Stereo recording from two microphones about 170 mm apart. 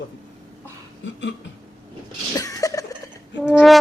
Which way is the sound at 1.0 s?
90° left.